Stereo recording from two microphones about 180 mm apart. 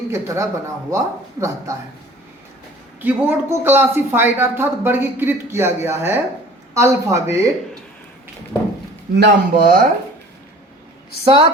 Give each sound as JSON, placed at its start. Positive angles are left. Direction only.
{"t": 0.1, "sound": "a woman's voice", "side_deg": -15}
{"t": 3.0, "sound": "a woman's voice", "side_deg": -10}
{"t": 9.1, "sound": "speech", "side_deg": -60}
{"t": 11.3, "sound": "speech", "side_deg": -25}